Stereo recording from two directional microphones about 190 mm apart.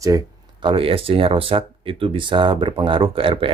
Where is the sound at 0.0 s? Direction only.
20° right (ahead or behind).